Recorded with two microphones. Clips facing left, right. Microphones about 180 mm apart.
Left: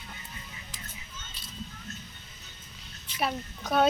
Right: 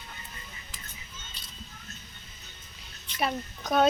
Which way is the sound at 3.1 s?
5° left (ahead or behind).